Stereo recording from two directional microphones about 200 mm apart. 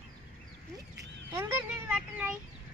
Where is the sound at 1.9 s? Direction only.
5° right (ahead or behind).